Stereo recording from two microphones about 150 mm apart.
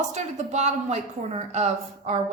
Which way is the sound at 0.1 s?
50° right (ahead or behind).